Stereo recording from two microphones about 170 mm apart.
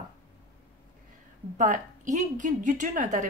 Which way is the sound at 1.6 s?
45° right (ahead or behind).